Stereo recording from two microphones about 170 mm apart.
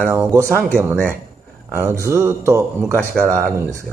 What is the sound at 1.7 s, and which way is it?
A man's voice, 15° right (ahead or behind).